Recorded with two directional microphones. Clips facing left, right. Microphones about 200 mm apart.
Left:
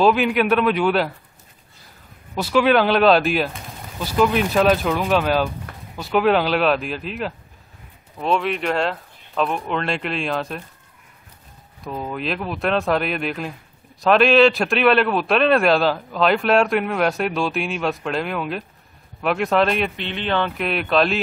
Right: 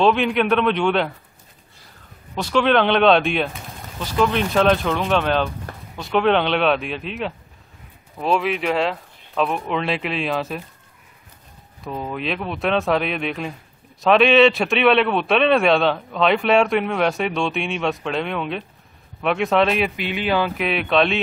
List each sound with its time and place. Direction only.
0.0 s a man's voice: 5° left (ahead or behind)
2.3 s a man's voice: 5° left (ahead or behind)
11.8 s a man's voice: centre (ahead or behind)